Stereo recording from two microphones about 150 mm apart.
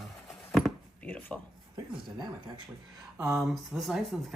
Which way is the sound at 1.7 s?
30° right (ahead or behind).